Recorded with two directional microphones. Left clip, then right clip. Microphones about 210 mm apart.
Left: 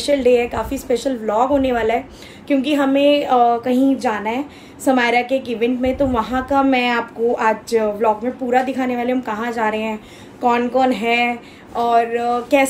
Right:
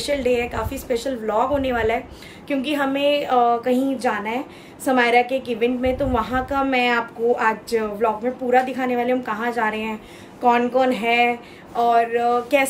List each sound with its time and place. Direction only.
0.0 s a woman's voice: 5° right (ahead or behind)